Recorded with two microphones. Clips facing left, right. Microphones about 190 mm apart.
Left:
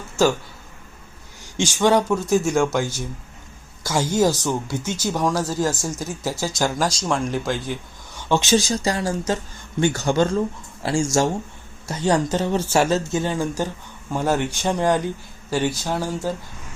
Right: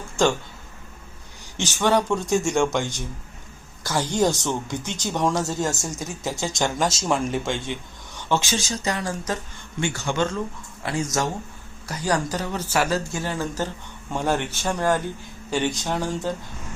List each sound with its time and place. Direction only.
0.2 s speech: 5° left (ahead or behind)
1.5 s speech: 10° left (ahead or behind)
8.3 s speech: 20° left (ahead or behind)
8.5 s speech: 35° left (ahead or behind)
9.8 s speech: 40° left (ahead or behind); by 16.3 s 5° left (ahead or behind)